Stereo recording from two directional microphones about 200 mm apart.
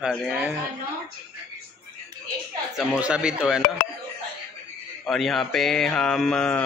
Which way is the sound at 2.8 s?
5° right (ahead or behind).